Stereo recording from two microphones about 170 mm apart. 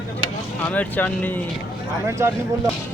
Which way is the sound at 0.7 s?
10° left (ahead or behind).